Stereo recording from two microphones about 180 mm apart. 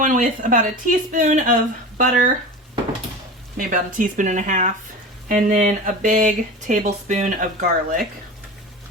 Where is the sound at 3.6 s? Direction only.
50° right (ahead or behind).